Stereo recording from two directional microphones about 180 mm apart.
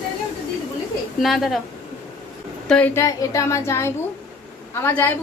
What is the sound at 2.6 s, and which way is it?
A woman's voice, 10° left (ahead or behind).